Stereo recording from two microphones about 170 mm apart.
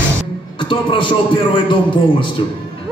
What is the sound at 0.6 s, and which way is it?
A man's voice, 30° left (ahead or behind).